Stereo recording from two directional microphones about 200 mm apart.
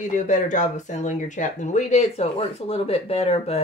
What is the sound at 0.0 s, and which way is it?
Speech, 40° left (ahead or behind).